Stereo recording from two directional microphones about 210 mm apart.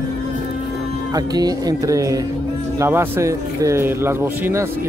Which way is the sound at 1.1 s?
20° right (ahead or behind).